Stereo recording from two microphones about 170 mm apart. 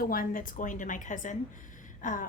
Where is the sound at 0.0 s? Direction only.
55° left (ahead or behind).